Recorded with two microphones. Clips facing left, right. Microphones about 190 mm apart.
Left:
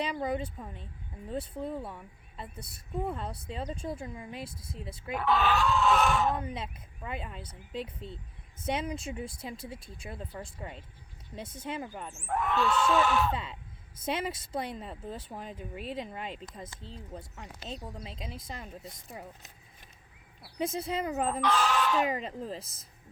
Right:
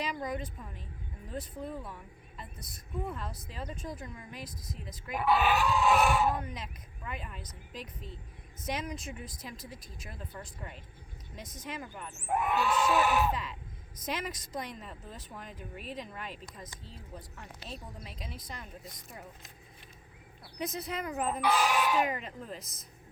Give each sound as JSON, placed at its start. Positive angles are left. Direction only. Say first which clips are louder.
{"t": 0.0, "sound": "a woman's voice", "louder": "left 4 dB", "side_deg": 30}
{"t": 5.1, "sound": "speech", "louder": "even", "side_deg": -15}
{"t": 6.5, "sound": "a woman's voice", "louder": "left 4 dB", "side_deg": 30}
{"t": 12.1, "sound": "speech", "louder": "even", "side_deg": -10}
{"t": 13.3, "sound": "a woman's voice", "louder": "left 2 dB", "side_deg": 30}
{"t": 20.6, "sound": "a woman's voice", "louder": "left 4 dB", "side_deg": 30}
{"t": 21.4, "sound": "speech", "louder": "right 1 dB", "side_deg": -10}
{"t": 22.0, "sound": "speech", "louder": "left 3 dB", "side_deg": 30}